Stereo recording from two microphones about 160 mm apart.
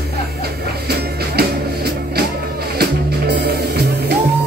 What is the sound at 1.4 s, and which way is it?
Music, 80° right.